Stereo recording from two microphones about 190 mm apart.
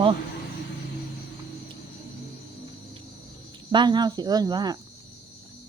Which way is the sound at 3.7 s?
25° right (ahead or behind).